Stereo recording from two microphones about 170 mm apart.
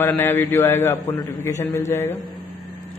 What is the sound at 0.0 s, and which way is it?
A man's voice, 10° left (ahead or behind).